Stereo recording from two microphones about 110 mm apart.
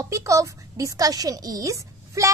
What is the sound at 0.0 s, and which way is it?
A woman's voice, 30° right (ahead or behind).